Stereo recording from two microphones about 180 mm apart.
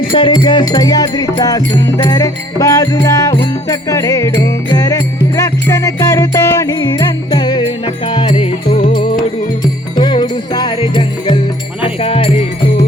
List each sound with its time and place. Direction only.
0.1 s music: 30° left (ahead or behind)
8.3 s music: 40° left (ahead or behind)
8.9 s music: 25° left (ahead or behind)